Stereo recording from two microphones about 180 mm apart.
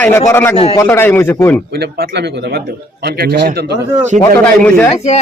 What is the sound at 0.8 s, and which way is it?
Speech, 15° left (ahead or behind).